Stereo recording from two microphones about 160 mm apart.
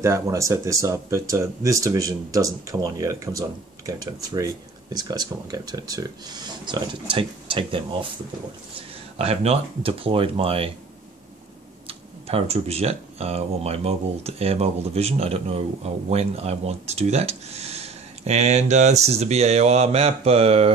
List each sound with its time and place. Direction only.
0.0 s speech: 20° right (ahead or behind)
9.2 s speech: 40° right (ahead or behind)
11.9 s speech: 35° right (ahead or behind)